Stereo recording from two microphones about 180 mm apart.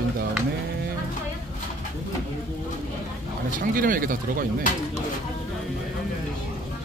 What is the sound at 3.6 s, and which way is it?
Speech, 50° right (ahead or behind).